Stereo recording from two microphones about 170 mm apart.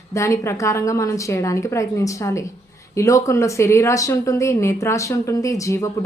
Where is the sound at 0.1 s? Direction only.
15° left (ahead or behind).